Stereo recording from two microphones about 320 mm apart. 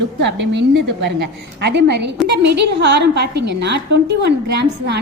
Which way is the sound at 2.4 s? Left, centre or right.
Right.